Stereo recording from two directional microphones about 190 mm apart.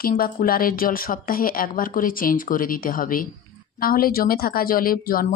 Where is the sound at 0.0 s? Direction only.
50° left (ahead or behind).